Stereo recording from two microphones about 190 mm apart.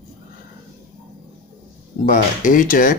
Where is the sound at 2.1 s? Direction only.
45° left (ahead or behind).